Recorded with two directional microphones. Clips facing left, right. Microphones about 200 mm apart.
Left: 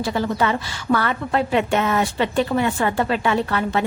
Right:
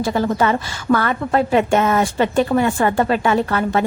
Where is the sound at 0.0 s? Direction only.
45° right (ahead or behind).